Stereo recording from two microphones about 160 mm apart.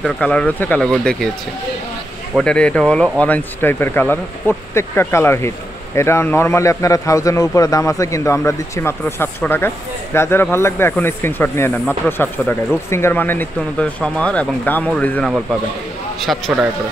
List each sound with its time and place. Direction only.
0.0 s speech: 5° left (ahead or behind)
2.3 s speech: 5° left (ahead or behind)